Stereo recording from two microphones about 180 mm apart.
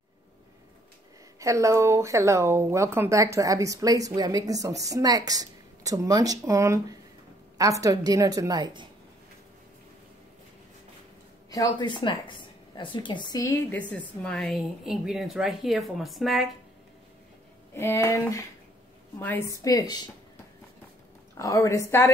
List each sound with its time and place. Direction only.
1.4 s a woman's voice: 15° right (ahead or behind)
11.5 s a woman's voice: 25° left (ahead or behind)
13.7 s speech: 5° left (ahead or behind)
17.7 s a woman's voice: 15° left (ahead or behind)
21.4 s a woman's voice: 15° left (ahead or behind)